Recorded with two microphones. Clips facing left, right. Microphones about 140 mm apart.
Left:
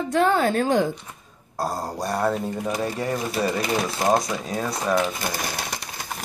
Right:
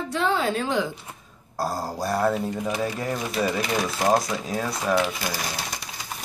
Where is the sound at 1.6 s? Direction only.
Centre (ahead or behind).